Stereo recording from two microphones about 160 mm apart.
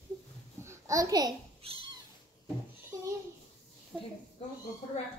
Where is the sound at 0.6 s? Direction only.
20° right (ahead or behind).